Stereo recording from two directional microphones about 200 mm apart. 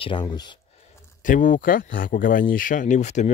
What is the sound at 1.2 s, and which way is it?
Speech, 40° left (ahead or behind).